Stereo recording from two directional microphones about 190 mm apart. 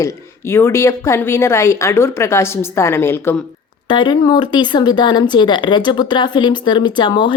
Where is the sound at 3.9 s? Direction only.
25° left (ahead or behind).